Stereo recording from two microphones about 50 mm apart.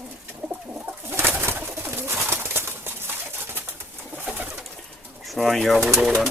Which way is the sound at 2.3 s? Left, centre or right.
Right.